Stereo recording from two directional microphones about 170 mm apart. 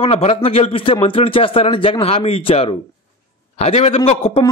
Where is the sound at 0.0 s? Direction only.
35° left (ahead or behind).